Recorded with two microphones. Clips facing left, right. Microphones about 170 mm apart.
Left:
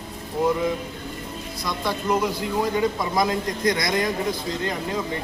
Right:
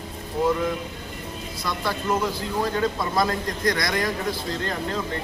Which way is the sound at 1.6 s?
15° left (ahead or behind).